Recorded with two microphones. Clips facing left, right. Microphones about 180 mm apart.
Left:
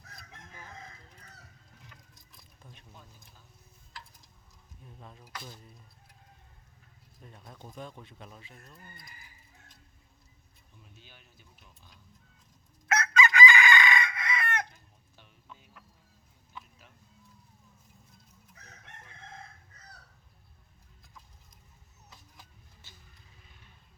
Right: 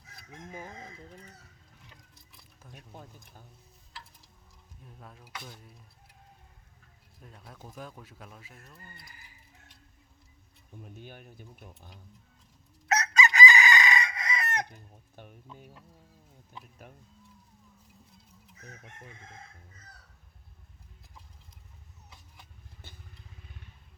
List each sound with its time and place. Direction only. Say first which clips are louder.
2.3 s keys jangling: right 4 dB; 5° right (ahead or behind)
4.9 s speech: even; centre (ahead or behind)
7.2 s speech: even; centre (ahead or behind)
10.8 s speech: right 12 dB; 50° right (ahead or behind)
12.9 s chicken: even; 40° right (ahead or behind)
14.7 s speech: right 8 dB; 50° right (ahead or behind)
16.8 s speech: right 9 dB; 50° right (ahead or behind)